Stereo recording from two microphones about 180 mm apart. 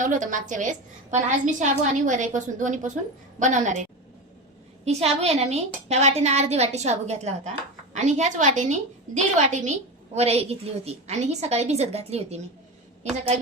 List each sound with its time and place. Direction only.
0.0 s a woman's voice: 45° right (ahead or behind)
4.9 s a woman's voice: 35° right (ahead or behind)